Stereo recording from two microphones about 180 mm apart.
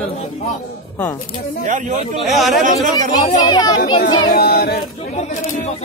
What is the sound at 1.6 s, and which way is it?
Speech, 45° right (ahead or behind).